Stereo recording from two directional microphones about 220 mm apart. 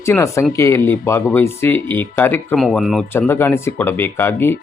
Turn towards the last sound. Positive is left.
turn(degrees=10)  # may be behind; listen again after turning